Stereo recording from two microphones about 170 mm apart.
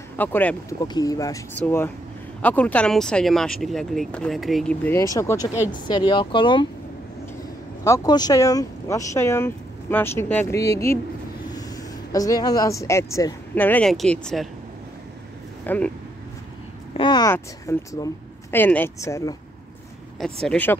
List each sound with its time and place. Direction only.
0.2 s speech: 10° left (ahead or behind)
0.8 s speech: 20° left (ahead or behind); by 4.7 s centre (ahead or behind)
4.8 s speech: 15° left (ahead or behind)
7.8 s speech: 20° left (ahead or behind); by 14.5 s centre (ahead or behind)
15.6 s speech: 10° left (ahead or behind)
16.9 s speech: 25° left (ahead or behind)
20.2 s speech: 5° left (ahead or behind)